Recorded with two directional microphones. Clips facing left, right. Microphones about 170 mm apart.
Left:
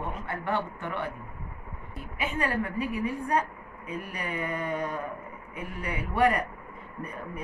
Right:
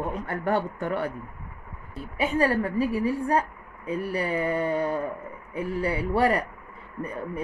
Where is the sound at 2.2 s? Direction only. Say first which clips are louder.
Right 6 dB; 35° right (ahead or behind).